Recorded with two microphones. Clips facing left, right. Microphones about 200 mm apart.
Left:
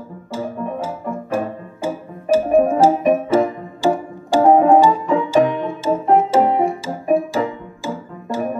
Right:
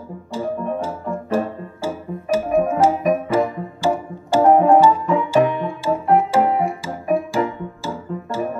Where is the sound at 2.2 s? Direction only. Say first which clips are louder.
Left 4 dB; 35° left (ahead or behind).